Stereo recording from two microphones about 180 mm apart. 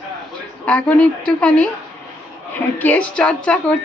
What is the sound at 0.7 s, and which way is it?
A woman's voice, 5° left (ahead or behind).